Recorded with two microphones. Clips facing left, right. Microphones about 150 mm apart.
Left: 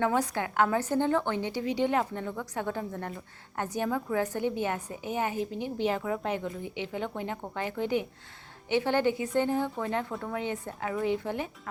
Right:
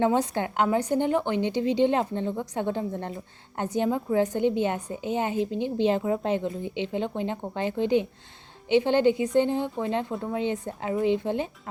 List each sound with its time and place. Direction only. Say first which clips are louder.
0.0 s a woman's voice: right 4 dB; 25° right (ahead or behind)